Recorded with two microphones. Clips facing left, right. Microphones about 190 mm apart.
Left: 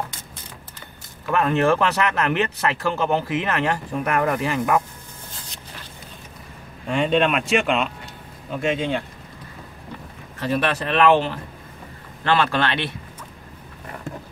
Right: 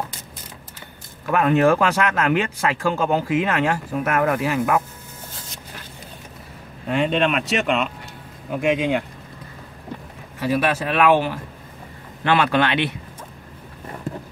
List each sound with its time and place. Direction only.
1.3 s speech: 15° right (ahead or behind)
6.9 s speech: 5° right (ahead or behind)
8.5 s speech: 15° right (ahead or behind)
10.4 s speech: 5° right (ahead or behind)